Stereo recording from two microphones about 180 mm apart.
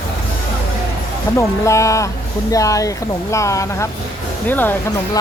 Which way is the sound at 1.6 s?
15° left (ahead or behind).